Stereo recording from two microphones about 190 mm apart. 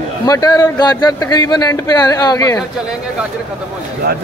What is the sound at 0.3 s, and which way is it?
Speech, 20° left (ahead or behind).